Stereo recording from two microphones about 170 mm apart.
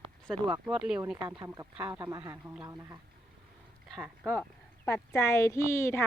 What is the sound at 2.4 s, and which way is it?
Speech, 5° right (ahead or behind).